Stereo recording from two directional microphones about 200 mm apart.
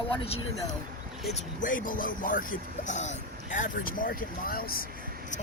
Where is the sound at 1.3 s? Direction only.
40° left (ahead or behind).